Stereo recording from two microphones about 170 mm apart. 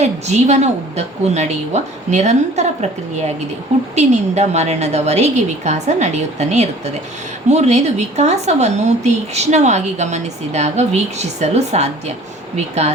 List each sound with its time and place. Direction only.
0.0 s speech: 40° right (ahead or behind)
3.9 s speech: 40° right (ahead or behind)